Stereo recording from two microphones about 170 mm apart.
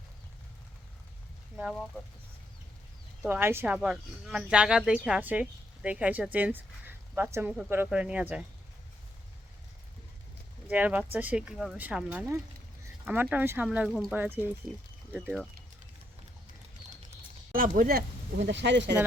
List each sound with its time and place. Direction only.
3.2 s a woman's voice: 15° right (ahead or behind)
10.7 s a woman's voice: 10° right (ahead or behind)
17.5 s speech: 55° right (ahead or behind); by 18.9 s 90° right